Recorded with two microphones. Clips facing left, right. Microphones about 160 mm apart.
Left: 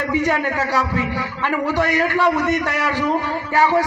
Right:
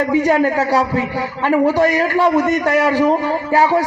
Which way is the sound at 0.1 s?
45° right (ahead or behind).